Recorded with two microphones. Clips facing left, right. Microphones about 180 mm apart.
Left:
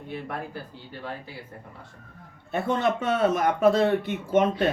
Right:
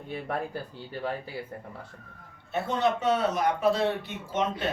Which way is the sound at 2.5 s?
50° left (ahead or behind).